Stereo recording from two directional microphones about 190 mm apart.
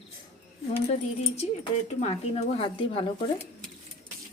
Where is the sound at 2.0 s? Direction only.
30° left (ahead or behind).